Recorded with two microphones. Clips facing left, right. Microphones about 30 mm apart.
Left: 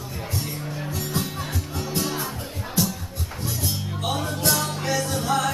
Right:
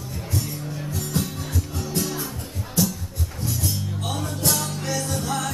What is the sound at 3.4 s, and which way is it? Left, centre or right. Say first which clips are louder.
Music: right 1 dB; centre.